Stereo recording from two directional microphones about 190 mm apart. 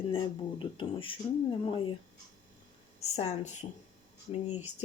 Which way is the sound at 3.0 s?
35° left (ahead or behind).